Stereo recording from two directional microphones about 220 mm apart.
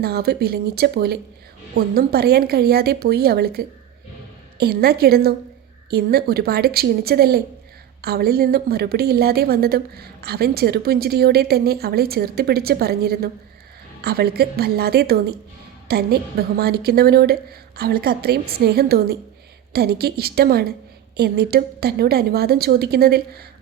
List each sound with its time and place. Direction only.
0.0 s a woman's voice: 45° right (ahead or behind)